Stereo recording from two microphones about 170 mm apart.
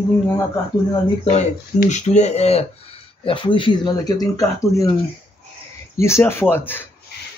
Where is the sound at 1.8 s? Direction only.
45° left (ahead or behind); by 4.9 s 20° left (ahead or behind).